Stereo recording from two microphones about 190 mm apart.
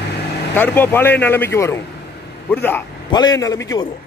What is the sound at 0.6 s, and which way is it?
Speech, 10° left (ahead or behind).